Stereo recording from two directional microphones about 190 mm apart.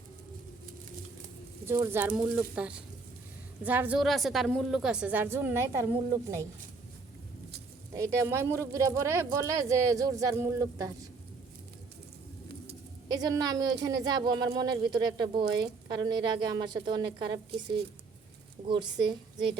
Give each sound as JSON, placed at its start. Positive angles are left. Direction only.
{"t": 1.6, "sound": "a woman's voice", "side_deg": -15}
{"t": 7.9, "sound": "speech", "side_deg": -15}
{"t": 13.1, "sound": "a woman's voice", "side_deg": -20}
{"t": 18.7, "sound": "a woman's voice", "side_deg": -25}